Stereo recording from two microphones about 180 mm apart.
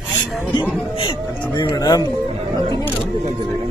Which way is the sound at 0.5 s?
25° left (ahead or behind).